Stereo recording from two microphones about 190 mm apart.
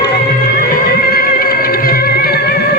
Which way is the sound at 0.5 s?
50° left (ahead or behind).